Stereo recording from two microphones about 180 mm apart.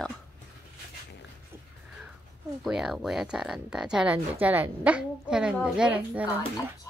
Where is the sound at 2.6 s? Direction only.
Centre (ahead or behind).